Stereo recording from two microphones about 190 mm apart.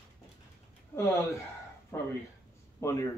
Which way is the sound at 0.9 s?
10° left (ahead or behind).